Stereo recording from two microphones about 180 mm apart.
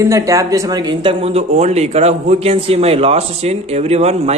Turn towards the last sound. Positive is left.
turn(degrees=-35)  # may be behind; listen again after turning